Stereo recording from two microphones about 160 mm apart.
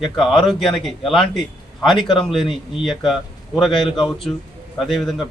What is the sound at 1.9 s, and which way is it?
Speech, 30° left (ahead or behind).